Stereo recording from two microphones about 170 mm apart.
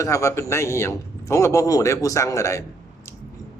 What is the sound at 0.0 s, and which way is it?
A man's voice, 15° left (ahead or behind).